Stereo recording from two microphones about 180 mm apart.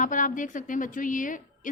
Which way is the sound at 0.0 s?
45° left (ahead or behind).